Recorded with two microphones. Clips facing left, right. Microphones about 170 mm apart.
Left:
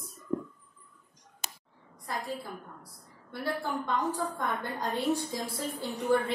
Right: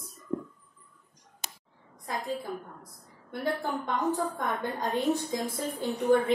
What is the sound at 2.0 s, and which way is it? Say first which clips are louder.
A woman's voice: right 3 dB; 20° right (ahead or behind).